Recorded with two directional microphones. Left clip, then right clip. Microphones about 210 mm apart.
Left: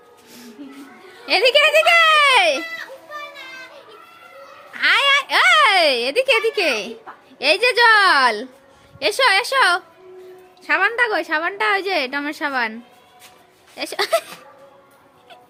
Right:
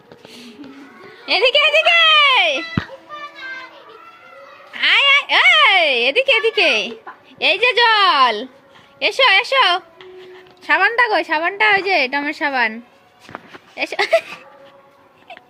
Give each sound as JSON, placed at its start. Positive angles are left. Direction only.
{"t": 0.3, "sound": "a sound", "side_deg": 15}
{"t": 1.2, "sound": "a child's voice", "side_deg": 20}
{"t": 4.7, "sound": "a child's voice", "side_deg": 10}
{"t": 10.6, "sound": "a woman's voice", "side_deg": -5}